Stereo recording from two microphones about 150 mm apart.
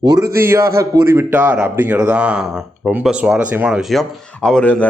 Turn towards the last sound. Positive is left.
turn(degrees=10)  # may be behind; listen again after turning